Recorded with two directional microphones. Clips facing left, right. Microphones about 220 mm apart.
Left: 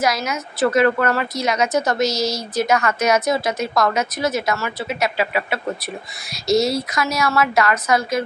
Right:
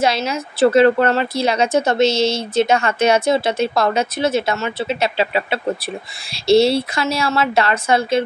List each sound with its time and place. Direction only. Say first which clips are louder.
0.0 s a woman's voice: right 3 dB; 30° right (ahead or behind)